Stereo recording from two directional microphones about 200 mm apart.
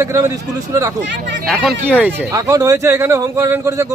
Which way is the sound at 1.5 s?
Centre (ahead or behind).